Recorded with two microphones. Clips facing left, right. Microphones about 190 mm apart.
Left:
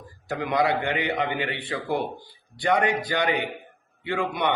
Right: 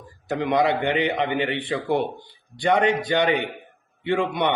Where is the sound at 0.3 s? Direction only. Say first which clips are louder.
Right 3 dB; 20° right (ahead or behind).